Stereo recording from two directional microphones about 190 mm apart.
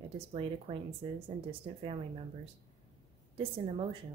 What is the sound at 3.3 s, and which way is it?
Speech, 25° right (ahead or behind).